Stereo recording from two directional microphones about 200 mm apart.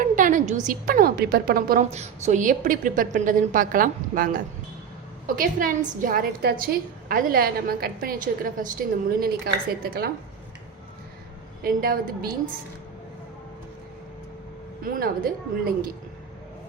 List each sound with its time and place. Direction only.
0.0 s a woman's voice: 40° right (ahead or behind)
1.9 s a woman's voice: 35° right (ahead or behind); by 10.1 s 50° right (ahead or behind)
11.6 s a woman's voice: 45° right (ahead or behind)
14.8 s a woman's voice: 45° right (ahead or behind)